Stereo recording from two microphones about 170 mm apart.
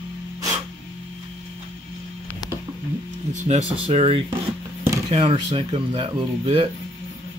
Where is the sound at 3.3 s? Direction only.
45° right (ahead or behind).